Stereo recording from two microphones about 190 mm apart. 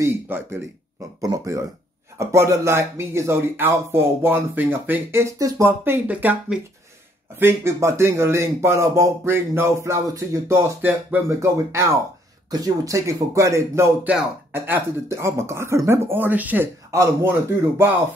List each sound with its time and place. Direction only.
0.0 s a man's voice: 10° right (ahead or behind)